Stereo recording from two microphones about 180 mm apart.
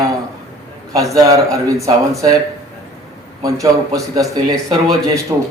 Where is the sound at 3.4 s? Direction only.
20° right (ahead or behind).